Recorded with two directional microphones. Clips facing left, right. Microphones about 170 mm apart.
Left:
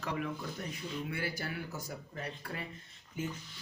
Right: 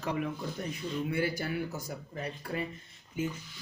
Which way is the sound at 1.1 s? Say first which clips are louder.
Right 7 dB; 20° right (ahead or behind).